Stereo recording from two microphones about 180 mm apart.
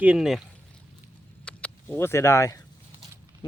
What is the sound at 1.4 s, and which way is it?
Speech, 10° left (ahead or behind).